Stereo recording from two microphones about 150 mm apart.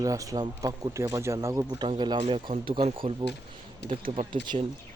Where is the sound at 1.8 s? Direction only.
30° right (ahead or behind).